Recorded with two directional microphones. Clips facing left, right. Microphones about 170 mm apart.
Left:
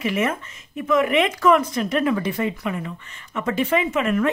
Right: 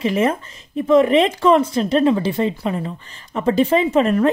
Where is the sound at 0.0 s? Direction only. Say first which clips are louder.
Right 5 dB; 30° right (ahead or behind).